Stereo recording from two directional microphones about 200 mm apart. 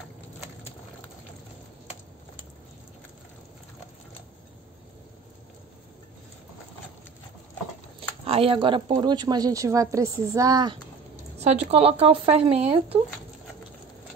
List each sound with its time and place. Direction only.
8.3 s speech: 30° right (ahead or behind)
11.3 s speech: 30° right (ahead or behind)